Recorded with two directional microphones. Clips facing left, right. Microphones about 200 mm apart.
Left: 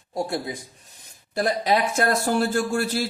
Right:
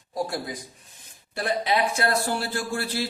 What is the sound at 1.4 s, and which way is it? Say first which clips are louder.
Speech: left 3 dB; 40° left (ahead or behind).